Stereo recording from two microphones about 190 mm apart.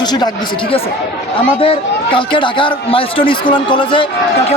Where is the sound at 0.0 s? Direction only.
20° left (ahead or behind).